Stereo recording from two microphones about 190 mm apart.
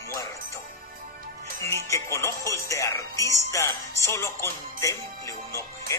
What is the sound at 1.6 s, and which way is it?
Speech, 15° left (ahead or behind).